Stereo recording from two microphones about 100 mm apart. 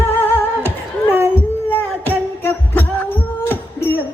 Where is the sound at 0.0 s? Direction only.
25° left (ahead or behind).